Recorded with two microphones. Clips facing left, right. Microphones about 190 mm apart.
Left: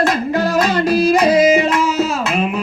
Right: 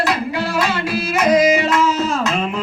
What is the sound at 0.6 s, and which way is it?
Music, 40° left (ahead or behind).